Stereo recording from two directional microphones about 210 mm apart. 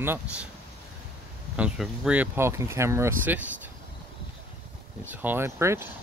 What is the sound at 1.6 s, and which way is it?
Speech, 5° right (ahead or behind).